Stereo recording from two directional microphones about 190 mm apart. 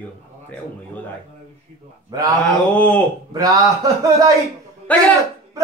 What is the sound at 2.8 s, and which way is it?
Speech, 5° left (ahead or behind).